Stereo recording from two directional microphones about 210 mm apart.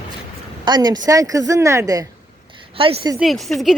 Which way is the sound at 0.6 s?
20° right (ahead or behind).